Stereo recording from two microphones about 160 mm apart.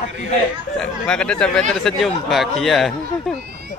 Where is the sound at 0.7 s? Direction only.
5° left (ahead or behind).